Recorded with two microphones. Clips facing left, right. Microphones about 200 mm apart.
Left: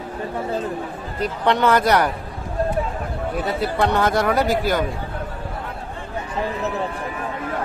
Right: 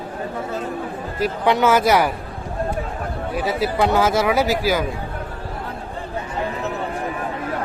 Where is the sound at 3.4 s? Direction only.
5° right (ahead or behind).